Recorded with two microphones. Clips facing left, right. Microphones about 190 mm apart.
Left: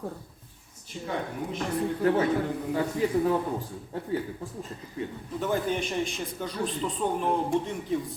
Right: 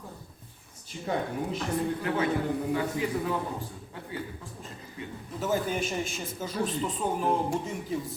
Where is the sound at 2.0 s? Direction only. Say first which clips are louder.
Left 7 dB; 40° left (ahead or behind).